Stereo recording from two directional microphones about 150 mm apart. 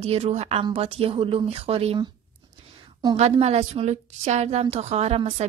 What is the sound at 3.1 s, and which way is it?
A woman's voice, 45° right (ahead or behind).